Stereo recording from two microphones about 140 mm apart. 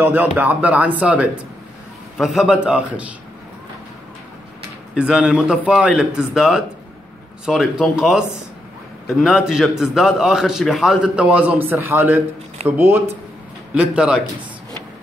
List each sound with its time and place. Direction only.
0.0 s a man's voice: 10° right (ahead or behind)
4.9 s a man's voice: 5° right (ahead or behind)